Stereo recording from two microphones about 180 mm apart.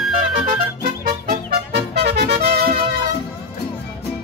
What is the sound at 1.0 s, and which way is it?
Music, 55° right (ahead or behind).